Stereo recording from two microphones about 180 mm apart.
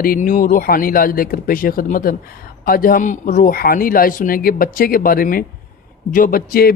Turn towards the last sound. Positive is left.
turn(degrees=55)  # may be behind; listen again after turning